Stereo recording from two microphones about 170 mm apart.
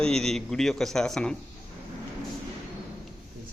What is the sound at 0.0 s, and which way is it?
A man's voice, 5° left (ahead or behind).